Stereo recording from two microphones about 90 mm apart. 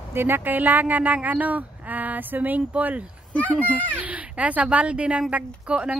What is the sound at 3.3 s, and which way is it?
Speech, 15° left (ahead or behind).